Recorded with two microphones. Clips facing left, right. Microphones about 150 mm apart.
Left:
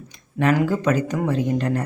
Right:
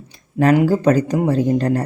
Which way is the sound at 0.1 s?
35° right (ahead or behind).